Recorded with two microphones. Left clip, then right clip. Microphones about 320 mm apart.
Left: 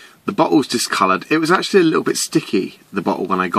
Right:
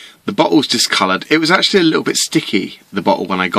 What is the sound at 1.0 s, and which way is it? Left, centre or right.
Speech, centre.